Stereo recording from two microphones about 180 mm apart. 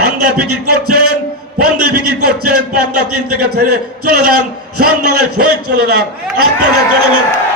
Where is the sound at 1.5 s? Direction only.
60° right (ahead or behind).